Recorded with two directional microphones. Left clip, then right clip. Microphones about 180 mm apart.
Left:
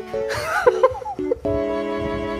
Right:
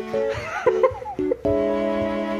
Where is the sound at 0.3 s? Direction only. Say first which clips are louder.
Left 8 dB; 35° left (ahead or behind).